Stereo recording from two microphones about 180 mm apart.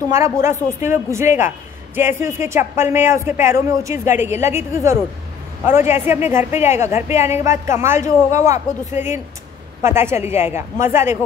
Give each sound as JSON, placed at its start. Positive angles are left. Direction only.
{"t": 0.1, "sound": "speech", "side_deg": -15}